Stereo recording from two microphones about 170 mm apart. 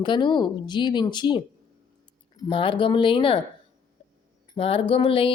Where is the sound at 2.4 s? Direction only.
30° left (ahead or behind).